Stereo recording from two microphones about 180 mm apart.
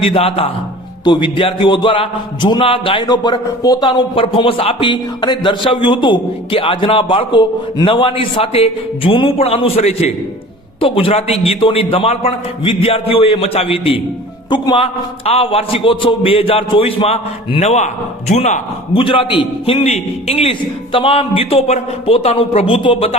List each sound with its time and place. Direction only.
0.0 s a man's voice: 30° left (ahead or behind)